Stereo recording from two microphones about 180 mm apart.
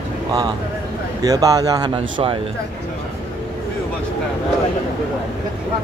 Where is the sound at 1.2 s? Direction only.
20° right (ahead or behind).